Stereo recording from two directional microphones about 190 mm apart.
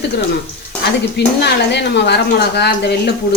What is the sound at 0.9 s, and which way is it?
Speech, 60° left (ahead or behind).